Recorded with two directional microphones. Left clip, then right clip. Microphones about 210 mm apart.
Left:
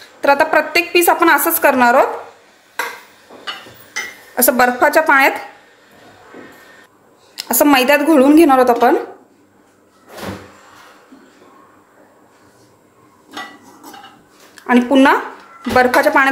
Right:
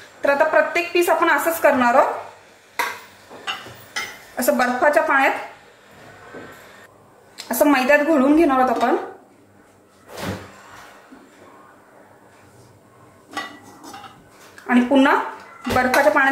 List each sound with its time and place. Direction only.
0.2 s a woman's voice: 50° left (ahead or behind)
4.4 s a woman's voice: 50° left (ahead or behind)
7.3 s a woman's voice: 45° left (ahead or behind)
14.5 s a woman's voice: 45° left (ahead or behind)